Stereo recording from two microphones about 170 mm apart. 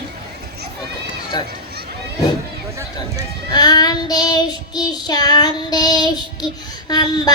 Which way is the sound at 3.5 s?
25° left (ahead or behind).